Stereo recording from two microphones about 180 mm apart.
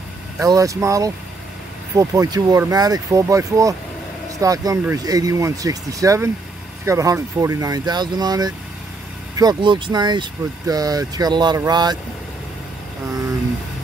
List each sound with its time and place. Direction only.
0.4 s speech: 20° right (ahead or behind)